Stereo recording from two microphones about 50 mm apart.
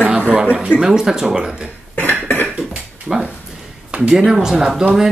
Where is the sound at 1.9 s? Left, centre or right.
Left.